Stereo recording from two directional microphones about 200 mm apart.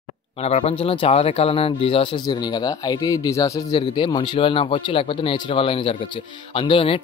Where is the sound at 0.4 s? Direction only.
30° left (ahead or behind).